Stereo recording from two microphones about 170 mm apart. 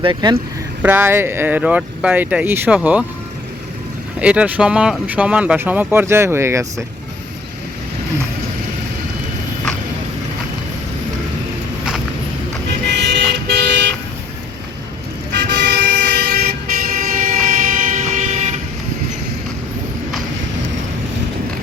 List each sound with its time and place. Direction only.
0.0 s speech: 25° right (ahead or behind)
0.8 s speech: 10° right (ahead or behind)
4.2 s speech: 5° right (ahead or behind)
13.5 s vehicle: 90° right
15.3 s vehicle: 85° right; by 18.5 s 45° right (ahead or behind)